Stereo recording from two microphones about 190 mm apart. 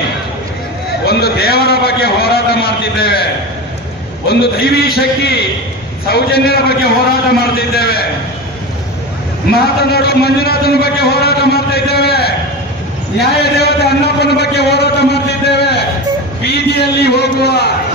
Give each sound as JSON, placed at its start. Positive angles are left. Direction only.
{"t": 1.0, "sound": "a sound", "side_deg": 55}
{"t": 4.3, "sound": "a man's voice", "side_deg": 55}
{"t": 7.7, "sound": "a man's voice", "side_deg": 55}
{"t": 9.5, "sound": "a man's voice", "side_deg": 55}